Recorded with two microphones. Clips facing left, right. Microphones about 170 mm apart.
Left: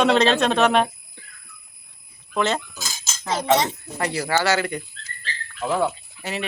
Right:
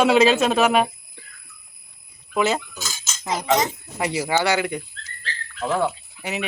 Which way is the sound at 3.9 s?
10° right (ahead or behind).